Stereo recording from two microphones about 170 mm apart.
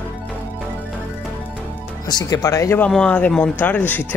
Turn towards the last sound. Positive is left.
turn(degrees=10)  # may be behind; listen again after turning